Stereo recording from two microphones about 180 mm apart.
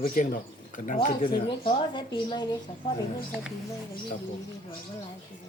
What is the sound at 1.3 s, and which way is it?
Speech, 25° left (ahead or behind).